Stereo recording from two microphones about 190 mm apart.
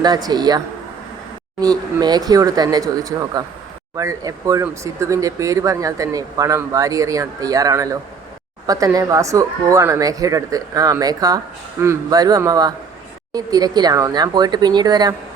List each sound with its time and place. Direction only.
0.0 s speech: 20° right (ahead or behind)
1.6 s speech: 20° right (ahead or behind)